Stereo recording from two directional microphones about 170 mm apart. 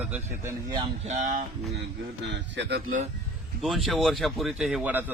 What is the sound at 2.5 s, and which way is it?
Speech, 90° right.